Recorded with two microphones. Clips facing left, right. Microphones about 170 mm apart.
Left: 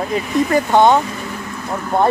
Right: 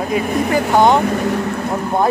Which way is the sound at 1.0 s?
55° right (ahead or behind).